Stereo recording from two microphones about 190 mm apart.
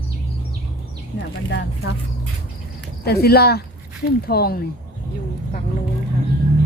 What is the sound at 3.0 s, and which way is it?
Speech, 55° left (ahead or behind).